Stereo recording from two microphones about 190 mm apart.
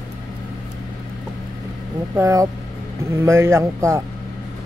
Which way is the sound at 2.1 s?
15° right (ahead or behind).